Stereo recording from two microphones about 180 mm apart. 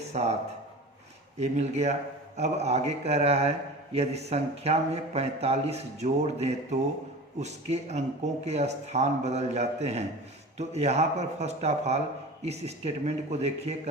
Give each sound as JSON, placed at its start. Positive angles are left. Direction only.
{"t": 0.1, "sound": "speech", "side_deg": -40}
{"t": 1.4, "sound": "speech", "side_deg": -40}